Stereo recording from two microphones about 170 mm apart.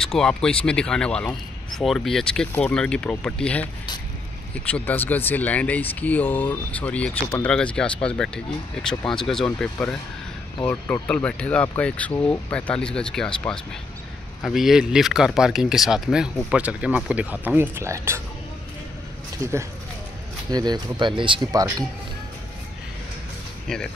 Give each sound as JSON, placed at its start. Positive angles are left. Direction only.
{"t": 0.0, "sound": "speech", "side_deg": 5}
{"t": 4.6, "sound": "speech", "side_deg": 10}
{"t": 14.4, "sound": "speech", "side_deg": 0}
{"t": 19.3, "sound": "speech", "side_deg": -20}